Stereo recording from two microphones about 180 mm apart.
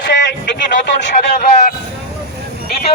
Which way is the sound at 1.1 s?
50° left (ahead or behind).